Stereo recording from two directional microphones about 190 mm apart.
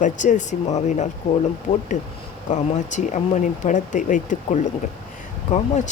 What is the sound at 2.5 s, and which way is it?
Speech, 40° left (ahead or behind).